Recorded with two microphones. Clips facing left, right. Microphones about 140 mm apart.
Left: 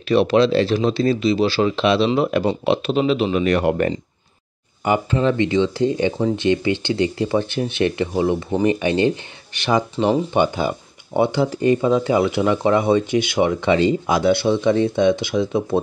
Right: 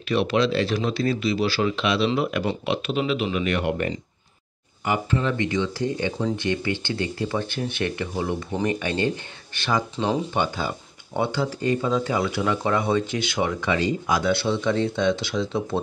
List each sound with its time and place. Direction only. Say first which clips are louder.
0.1 s speech: left 6 dB; 35° left (ahead or behind)
4.8 s speech: left 6 dB; 25° left (ahead or behind)